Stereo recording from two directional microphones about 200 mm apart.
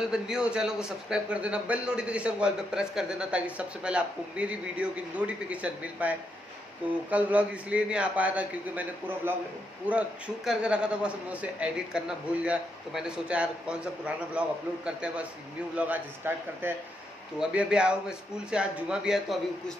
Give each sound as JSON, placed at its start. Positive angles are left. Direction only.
{"t": 0.1, "sound": "a man's voice", "side_deg": -5}
{"t": 15.7, "sound": "a man's voice", "side_deg": -10}